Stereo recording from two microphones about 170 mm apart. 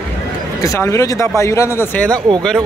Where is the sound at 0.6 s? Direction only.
15° left (ahead or behind).